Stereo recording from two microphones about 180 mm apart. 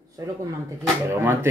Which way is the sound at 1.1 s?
15° right (ahead or behind).